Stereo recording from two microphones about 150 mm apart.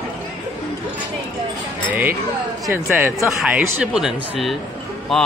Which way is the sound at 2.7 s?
15° right (ahead or behind).